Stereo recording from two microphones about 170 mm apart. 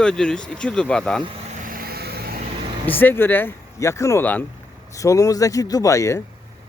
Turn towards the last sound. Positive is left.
turn(degrees=15)  # may be behind; listen again after turning